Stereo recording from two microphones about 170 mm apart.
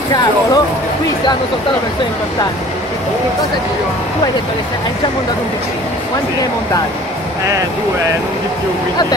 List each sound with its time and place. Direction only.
0.1 s speech: 25° left (ahead or behind)